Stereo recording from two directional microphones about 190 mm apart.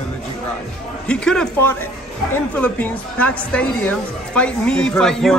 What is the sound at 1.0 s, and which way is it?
A man's voice, 5° left (ahead or behind).